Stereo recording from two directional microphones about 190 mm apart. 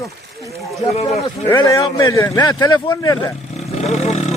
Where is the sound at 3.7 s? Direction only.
35° left (ahead or behind).